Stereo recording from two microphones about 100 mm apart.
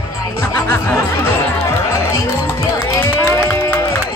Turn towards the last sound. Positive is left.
turn(degrees=25)  # may be behind; listen again after turning